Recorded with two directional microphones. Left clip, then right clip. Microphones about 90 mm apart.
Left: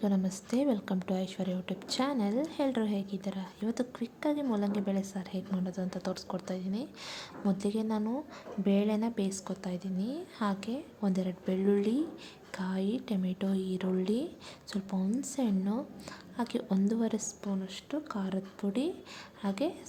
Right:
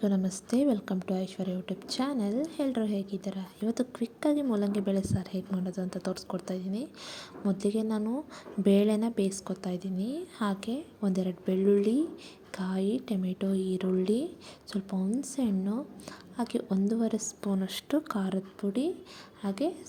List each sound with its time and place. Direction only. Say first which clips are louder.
0.0 s a woman's voice: right 2 dB; 30° right (ahead or behind)
8.6 s a woman's voice: right 5 dB; 55° right (ahead or behind); by 17.2 s 25° right (ahead or behind)
17.4 s a woman's voice: right 5 dB; 80° right
18.6 s a woman's voice: right 2 dB; 20° right (ahead or behind)